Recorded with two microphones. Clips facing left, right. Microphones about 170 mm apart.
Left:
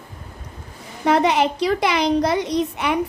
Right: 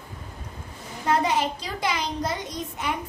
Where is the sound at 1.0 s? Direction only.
75° left (ahead or behind).